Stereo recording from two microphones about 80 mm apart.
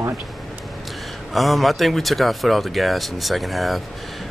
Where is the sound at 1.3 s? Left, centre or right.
Centre.